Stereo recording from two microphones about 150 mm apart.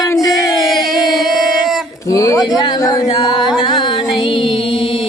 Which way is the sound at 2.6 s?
30° left (ahead or behind).